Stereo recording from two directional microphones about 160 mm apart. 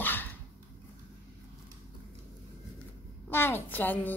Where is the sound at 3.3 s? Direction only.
15° left (ahead or behind).